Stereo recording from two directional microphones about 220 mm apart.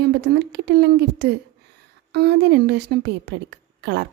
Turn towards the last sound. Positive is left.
turn(degrees=-50)  # may be behind; listen again after turning